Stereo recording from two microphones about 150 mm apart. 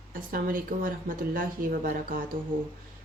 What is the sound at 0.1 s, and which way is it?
Speech, 70° right (ahead or behind).